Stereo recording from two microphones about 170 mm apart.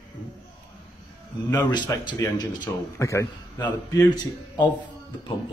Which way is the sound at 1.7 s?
25° left (ahead or behind).